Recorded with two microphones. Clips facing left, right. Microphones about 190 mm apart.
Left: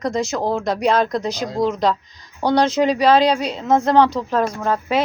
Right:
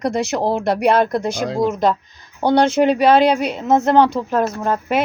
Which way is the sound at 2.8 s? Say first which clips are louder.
Right 2 dB; 60° right (ahead or behind).